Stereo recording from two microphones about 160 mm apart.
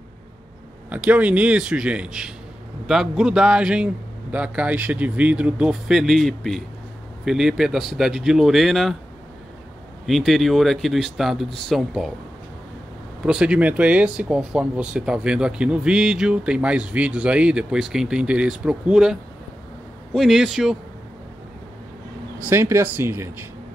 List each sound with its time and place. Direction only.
0.8 s a man's voice: 10° right (ahead or behind)
10.0 s speech: centre (ahead or behind)
13.2 s speech: 5° right (ahead or behind)
22.5 s a man's voice: 15° right (ahead or behind)